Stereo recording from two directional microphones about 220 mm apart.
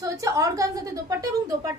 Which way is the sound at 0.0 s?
15° right (ahead or behind).